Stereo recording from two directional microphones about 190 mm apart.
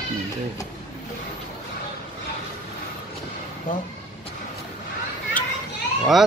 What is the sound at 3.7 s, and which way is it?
Speech, 45° left (ahead or behind).